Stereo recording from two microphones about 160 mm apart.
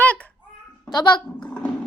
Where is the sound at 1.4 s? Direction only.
5° left (ahead or behind).